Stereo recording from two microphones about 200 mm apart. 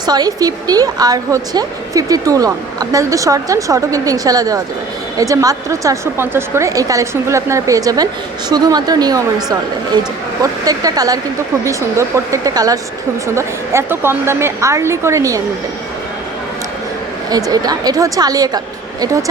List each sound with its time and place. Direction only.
0.0 s a woman's voice: 20° right (ahead or behind)
17.2 s a woman's voice: 20° right (ahead or behind)